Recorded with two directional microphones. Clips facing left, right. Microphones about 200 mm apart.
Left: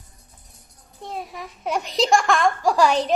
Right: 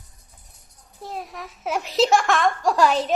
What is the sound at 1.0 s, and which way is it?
A child's voice, centre (ahead or behind).